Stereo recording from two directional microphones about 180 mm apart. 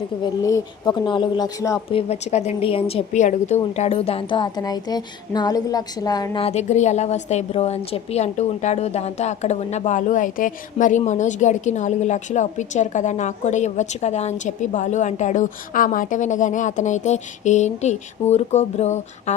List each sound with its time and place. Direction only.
0.4 s speech: 20° left (ahead or behind)
6.4 s a woman's voice: 35° left (ahead or behind)